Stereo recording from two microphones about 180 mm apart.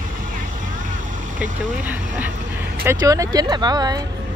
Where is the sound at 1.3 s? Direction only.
10° right (ahead or behind).